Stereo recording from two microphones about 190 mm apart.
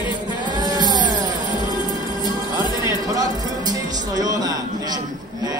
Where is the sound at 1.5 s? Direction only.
20° left (ahead or behind).